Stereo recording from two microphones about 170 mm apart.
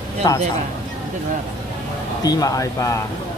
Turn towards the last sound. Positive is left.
turn(degrees=20)  # may be behind; listen again after turning